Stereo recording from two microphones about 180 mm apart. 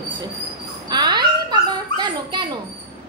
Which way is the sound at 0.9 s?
25° right (ahead or behind).